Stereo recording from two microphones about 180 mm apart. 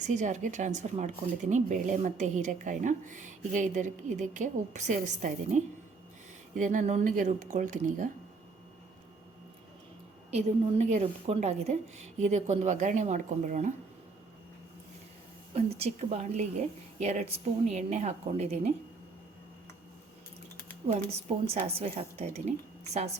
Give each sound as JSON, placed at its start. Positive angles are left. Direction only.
{"t": 0.0, "sound": "speech", "side_deg": -45}
{"t": 6.6, "sound": "speech", "side_deg": -45}
{"t": 10.3, "sound": "a woman's voice", "side_deg": -40}
{"t": 15.5, "sound": "a woman's voice", "side_deg": -35}
{"t": 20.8, "sound": "a woman's voice", "side_deg": -35}